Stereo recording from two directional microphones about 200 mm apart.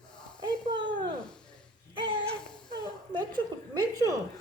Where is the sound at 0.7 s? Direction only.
25° right (ahead or behind).